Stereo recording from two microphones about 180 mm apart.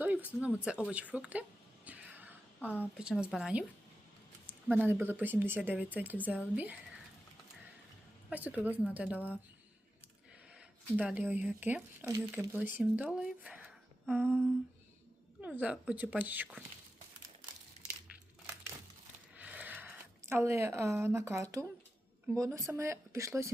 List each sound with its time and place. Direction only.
0.0 s speech: 10° right (ahead or behind)
2.6 s a woman's voice: 10° left (ahead or behind)
2.8 s speech: 5° right (ahead or behind)
4.7 s speech: 10° right (ahead or behind)
8.3 s speech: 10° right (ahead or behind)
10.9 s a woman's voice: 5° right (ahead or behind)
14.3 s speech: 5° left (ahead or behind)
15.4 s speech: 10° right (ahead or behind)
18.1 s crushing: 10° right (ahead or behind)
19.4 s a sound: 10° right (ahead or behind)
22.3 s speech: 15° right (ahead or behind)